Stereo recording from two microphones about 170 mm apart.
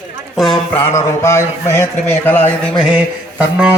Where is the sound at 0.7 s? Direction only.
10° left (ahead or behind).